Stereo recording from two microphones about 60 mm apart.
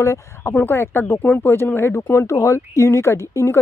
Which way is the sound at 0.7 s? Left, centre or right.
Left.